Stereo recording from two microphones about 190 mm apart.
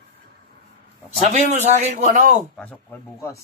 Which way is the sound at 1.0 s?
35° right (ahead or behind).